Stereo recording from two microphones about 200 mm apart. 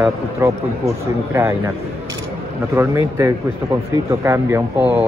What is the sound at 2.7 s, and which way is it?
A man's voice, 15° right (ahead or behind).